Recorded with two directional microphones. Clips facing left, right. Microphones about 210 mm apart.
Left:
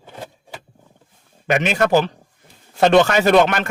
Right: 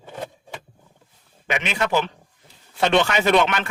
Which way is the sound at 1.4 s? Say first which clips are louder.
Left 7 dB; 45° left (ahead or behind).